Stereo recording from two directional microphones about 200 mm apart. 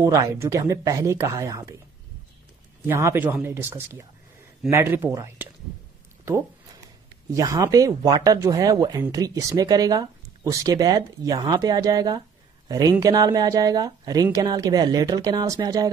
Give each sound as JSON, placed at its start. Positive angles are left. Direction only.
{"t": 0.0, "sound": "speech", "side_deg": -15}
{"t": 2.9, "sound": "speech", "side_deg": -10}
{"t": 7.2, "sound": "speech", "side_deg": -20}